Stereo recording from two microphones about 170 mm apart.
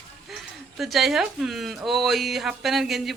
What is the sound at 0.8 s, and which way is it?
A man's voice, centre (ahead or behind).